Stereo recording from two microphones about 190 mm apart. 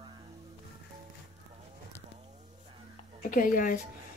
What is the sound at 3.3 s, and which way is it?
Speech, 45° left (ahead or behind).